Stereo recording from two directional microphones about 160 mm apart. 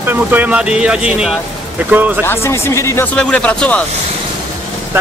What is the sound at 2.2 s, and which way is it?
Speech, 15° left (ahead or behind).